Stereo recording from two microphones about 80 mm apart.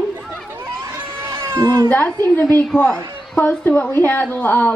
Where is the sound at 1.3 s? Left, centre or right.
Right.